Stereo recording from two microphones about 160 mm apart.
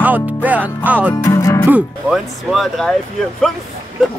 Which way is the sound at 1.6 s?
5° right (ahead or behind).